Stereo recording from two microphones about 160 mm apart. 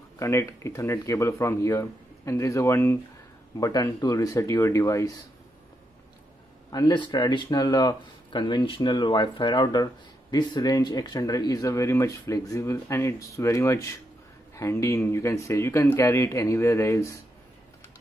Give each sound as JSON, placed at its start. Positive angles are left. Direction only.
{"t": 0.2, "sound": "speech", "side_deg": 20}
{"t": 6.7, "sound": "speech", "side_deg": 25}